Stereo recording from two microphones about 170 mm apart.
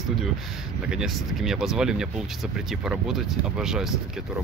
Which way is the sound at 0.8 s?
5° right (ahead or behind).